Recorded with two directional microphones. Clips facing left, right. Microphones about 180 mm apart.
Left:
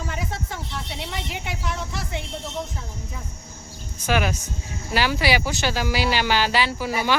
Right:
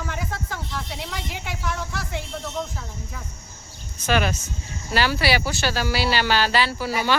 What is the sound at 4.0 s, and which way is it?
Speech, 10° left (ahead or behind).